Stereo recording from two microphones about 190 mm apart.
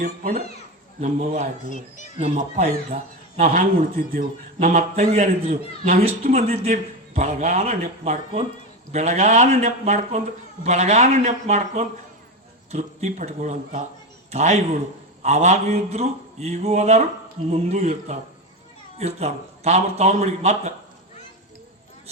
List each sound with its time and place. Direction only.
0.0 s a man's voice: 45° right (ahead or behind)